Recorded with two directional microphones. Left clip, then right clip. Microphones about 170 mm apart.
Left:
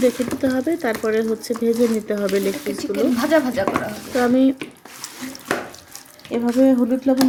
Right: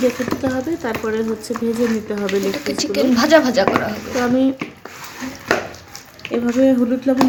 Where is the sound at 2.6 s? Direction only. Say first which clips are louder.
Right 3 dB; centre (ahead or behind).